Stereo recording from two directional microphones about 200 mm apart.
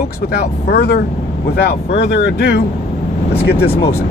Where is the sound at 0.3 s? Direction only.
55° left (ahead or behind).